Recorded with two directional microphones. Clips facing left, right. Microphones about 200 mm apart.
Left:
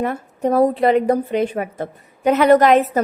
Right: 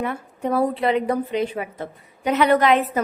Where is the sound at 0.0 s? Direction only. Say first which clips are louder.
Left 5 dB; 40° left (ahead or behind).